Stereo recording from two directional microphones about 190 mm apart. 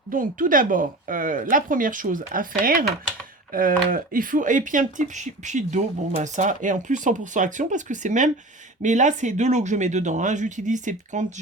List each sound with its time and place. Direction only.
0.1 s speech: 45° right (ahead or behind)